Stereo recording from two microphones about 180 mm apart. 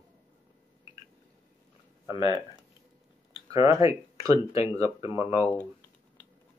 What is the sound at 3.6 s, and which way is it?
Speech, 15° right (ahead or behind).